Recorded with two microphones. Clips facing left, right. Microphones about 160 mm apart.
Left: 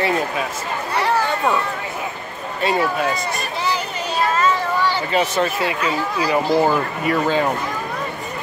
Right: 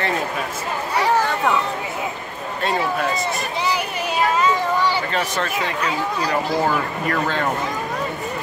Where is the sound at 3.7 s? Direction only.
10° right (ahead or behind).